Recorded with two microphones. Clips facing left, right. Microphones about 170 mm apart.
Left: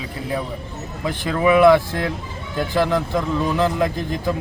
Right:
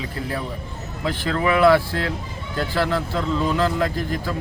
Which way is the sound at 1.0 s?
15° left (ahead or behind).